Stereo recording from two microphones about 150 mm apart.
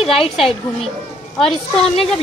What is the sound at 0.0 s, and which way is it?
Speech, 40° left (ahead or behind).